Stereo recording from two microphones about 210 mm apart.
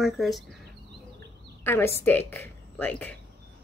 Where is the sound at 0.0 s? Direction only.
Centre (ahead or behind).